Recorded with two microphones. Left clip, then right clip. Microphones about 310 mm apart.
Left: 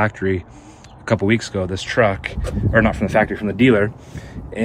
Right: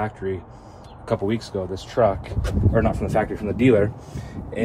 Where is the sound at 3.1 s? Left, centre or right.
Left.